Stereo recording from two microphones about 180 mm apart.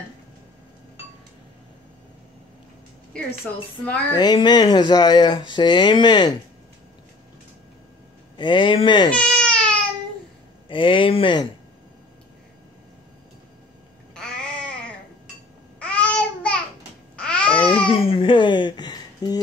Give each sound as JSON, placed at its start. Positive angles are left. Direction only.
{"t": 3.1, "sound": "speech", "side_deg": 5}
{"t": 4.1, "sound": "speech", "side_deg": 25}
{"t": 8.4, "sound": "speech", "side_deg": 25}
{"t": 9.1, "sound": "baby cry", "side_deg": 5}
{"t": 10.7, "sound": "speech", "side_deg": 30}
{"t": 15.8, "sound": "babbling", "side_deg": 5}
{"t": 17.6, "sound": "babbling", "side_deg": 30}